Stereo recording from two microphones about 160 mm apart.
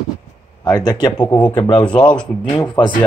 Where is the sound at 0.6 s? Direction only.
25° left (ahead or behind).